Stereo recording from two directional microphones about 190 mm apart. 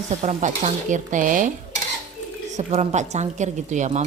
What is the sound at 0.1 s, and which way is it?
Dishes, 40° right (ahead or behind).